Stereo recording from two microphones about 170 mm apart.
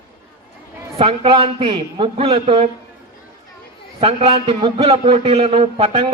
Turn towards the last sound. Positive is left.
turn(degrees=-30)  # may be behind; listen again after turning